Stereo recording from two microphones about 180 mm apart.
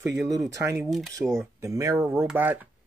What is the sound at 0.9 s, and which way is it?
Speech, centre (ahead or behind).